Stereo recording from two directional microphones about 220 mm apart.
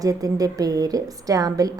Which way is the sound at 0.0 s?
15° right (ahead or behind).